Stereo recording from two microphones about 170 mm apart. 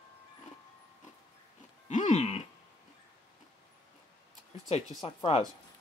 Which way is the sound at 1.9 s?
45° left (ahead or behind).